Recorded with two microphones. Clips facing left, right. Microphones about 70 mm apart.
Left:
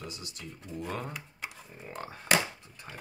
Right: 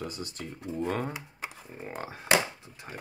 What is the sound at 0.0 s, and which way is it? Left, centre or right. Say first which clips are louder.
Speech: right 6 dB; right.